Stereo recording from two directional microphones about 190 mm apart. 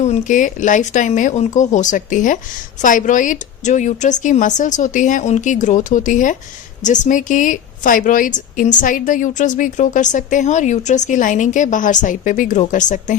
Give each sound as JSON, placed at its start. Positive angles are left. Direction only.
{"t": 0.0, "sound": "a woman's voice", "side_deg": 40}